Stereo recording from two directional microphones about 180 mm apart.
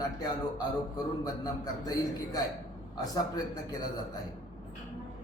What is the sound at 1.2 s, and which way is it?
A man's voice, 20° left (ahead or behind).